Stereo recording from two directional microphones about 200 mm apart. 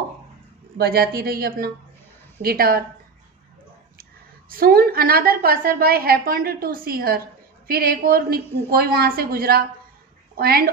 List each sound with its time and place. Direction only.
0.7 s a woman's voice: 50° right (ahead or behind)
4.0 s a woman's voice: 45° right (ahead or behind)